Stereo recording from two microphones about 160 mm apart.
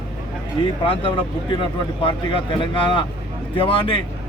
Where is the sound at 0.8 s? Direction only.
35° left (ahead or behind).